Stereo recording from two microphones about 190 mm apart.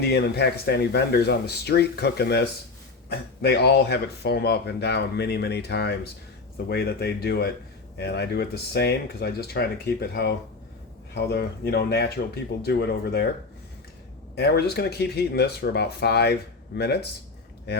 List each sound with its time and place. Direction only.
0.0 s speech: 60° left (ahead or behind)
14.3 s speech: 60° left (ahead or behind)